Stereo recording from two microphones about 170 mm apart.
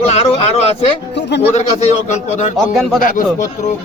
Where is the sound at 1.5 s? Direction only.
40° left (ahead or behind).